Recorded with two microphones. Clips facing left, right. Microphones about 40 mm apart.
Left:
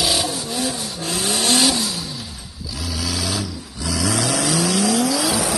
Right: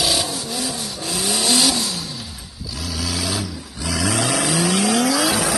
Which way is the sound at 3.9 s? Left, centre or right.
Right.